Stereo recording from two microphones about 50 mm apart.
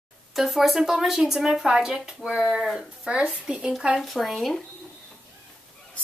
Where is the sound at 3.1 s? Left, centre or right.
Centre.